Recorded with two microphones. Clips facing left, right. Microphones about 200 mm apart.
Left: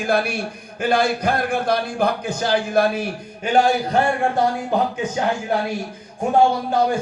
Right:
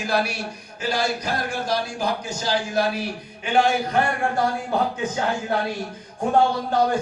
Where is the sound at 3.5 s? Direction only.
40° left (ahead or behind).